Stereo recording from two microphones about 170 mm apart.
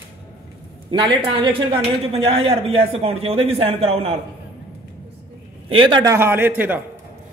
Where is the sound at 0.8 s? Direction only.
25° right (ahead or behind).